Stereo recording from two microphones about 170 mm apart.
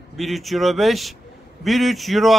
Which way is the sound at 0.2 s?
Centre (ahead or behind).